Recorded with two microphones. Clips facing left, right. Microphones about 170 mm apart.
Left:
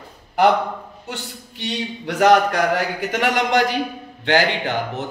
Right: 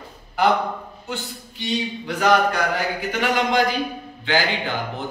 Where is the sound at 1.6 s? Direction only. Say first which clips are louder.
Right 1 dB; 70° left (ahead or behind).